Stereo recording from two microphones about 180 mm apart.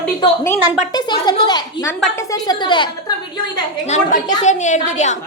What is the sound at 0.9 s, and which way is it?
Speech, 25° left (ahead or behind).